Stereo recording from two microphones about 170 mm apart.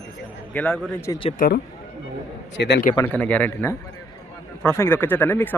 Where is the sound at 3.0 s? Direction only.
10° left (ahead or behind).